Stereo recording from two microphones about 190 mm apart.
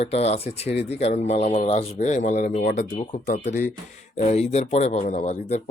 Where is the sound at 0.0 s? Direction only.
35° left (ahead or behind).